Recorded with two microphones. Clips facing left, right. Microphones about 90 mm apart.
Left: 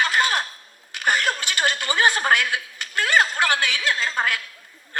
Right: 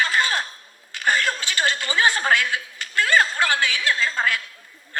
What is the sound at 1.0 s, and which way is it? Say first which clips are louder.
A man's voice: even; 20° left (ahead or behind).